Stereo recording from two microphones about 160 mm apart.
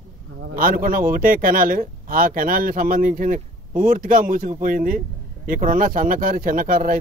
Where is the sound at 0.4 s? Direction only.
60° right (ahead or behind).